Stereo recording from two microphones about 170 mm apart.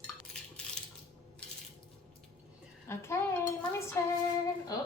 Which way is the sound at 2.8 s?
15° left (ahead or behind).